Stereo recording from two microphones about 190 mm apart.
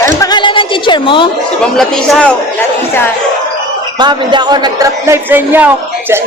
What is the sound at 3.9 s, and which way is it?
Speech, 25° right (ahead or behind).